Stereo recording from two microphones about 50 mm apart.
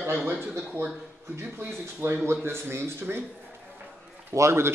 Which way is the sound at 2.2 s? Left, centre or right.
Right.